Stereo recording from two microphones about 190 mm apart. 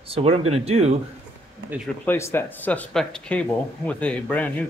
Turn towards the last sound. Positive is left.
turn(degrees=5)  # may be behind; listen again after turning